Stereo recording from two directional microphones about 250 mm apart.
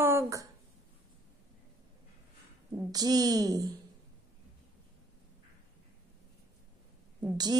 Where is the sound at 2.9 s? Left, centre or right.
Centre.